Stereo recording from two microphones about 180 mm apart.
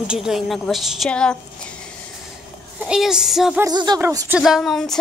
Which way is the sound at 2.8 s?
5° right (ahead or behind).